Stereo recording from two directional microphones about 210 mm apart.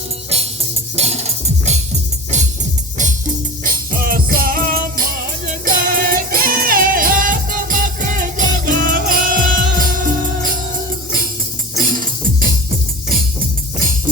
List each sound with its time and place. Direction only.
0.9 s music: 30° right (ahead or behind)
3.6 s music: 40° right (ahead or behind)
11.8 s music: 40° right (ahead or behind)